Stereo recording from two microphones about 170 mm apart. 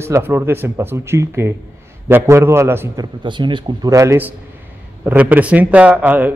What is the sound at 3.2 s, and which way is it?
A man's voice, 30° right (ahead or behind).